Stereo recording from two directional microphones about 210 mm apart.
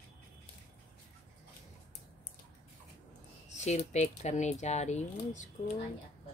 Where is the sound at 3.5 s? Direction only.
35° left (ahead or behind).